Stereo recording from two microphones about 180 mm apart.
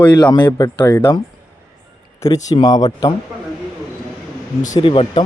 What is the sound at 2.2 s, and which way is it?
Speech, 20° left (ahead or behind).